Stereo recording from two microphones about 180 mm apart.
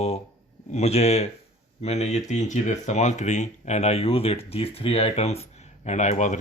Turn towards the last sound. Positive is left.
turn(degrees=40)  # may be behind; listen again after turning